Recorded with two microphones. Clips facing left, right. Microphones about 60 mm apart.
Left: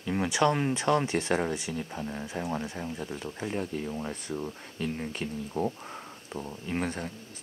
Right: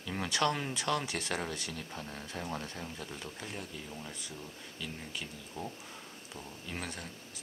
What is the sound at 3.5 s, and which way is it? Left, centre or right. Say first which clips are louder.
Speech: left 10 dB; left.